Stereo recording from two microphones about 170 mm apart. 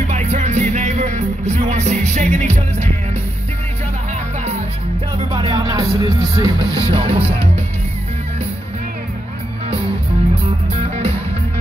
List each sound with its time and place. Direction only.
0.1 s music: 40° right (ahead or behind)
5.3 s music: 25° right (ahead or behind)